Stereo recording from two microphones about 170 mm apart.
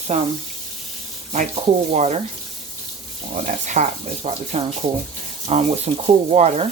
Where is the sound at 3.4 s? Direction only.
45° right (ahead or behind).